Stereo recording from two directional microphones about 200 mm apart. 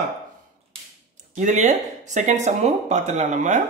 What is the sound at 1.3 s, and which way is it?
Speech, 35° right (ahead or behind).